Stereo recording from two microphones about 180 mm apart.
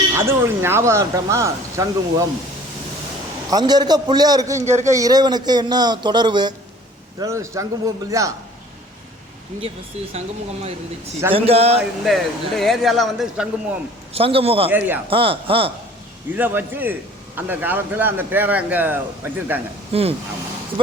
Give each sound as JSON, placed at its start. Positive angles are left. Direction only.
{"t": 0.2, "sound": "speech", "side_deg": -15}
{"t": 3.5, "sound": "a man's voice", "side_deg": -25}
{"t": 9.6, "sound": "speech", "side_deg": -35}
{"t": 12.0, "sound": "speech", "side_deg": 0}
{"t": 14.1, "sound": "speech", "side_deg": -30}
{"t": 14.7, "sound": "speech", "side_deg": -10}
{"t": 15.0, "sound": "speech", "side_deg": -30}
{"t": 16.3, "sound": "speech", "side_deg": -10}
{"t": 19.9, "sound": "speech", "side_deg": -35}